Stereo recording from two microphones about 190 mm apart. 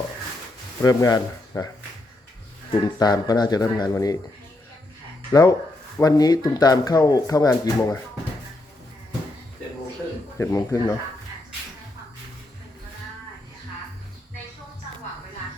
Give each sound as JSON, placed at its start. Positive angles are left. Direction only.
{"t": 0.8, "sound": "speech", "side_deg": 15}
{"t": 2.8, "sound": "speech", "side_deg": 20}
{"t": 5.3, "sound": "speech", "side_deg": 20}
{"t": 10.3, "sound": "speech", "side_deg": 15}